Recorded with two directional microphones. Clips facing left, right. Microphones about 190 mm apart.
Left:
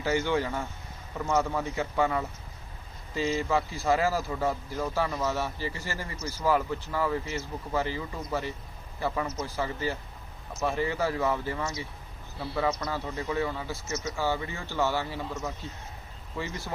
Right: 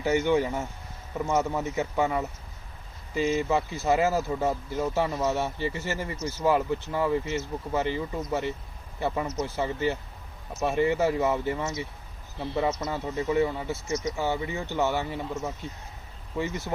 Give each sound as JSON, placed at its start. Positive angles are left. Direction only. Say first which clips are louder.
{"t": 0.0, "sound": "speech", "louder": "right 4 dB", "side_deg": -20}